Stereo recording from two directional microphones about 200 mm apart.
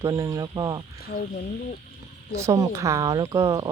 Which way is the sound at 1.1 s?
50° left (ahead or behind).